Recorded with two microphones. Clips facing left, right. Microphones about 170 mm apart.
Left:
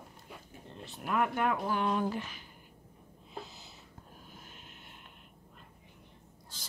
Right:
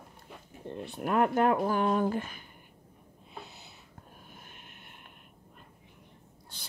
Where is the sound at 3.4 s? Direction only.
60° right (ahead or behind).